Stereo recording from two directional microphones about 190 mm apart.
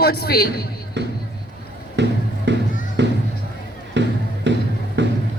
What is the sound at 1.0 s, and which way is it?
Music, 65° right (ahead or behind).